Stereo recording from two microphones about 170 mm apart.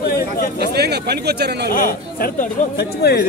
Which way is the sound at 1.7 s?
55° left (ahead or behind).